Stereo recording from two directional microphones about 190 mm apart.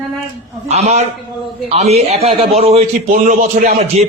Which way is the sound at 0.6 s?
35° right (ahead or behind).